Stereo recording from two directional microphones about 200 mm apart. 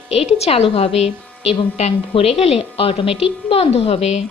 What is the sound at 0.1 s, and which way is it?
A woman's voice, 30° left (ahead or behind).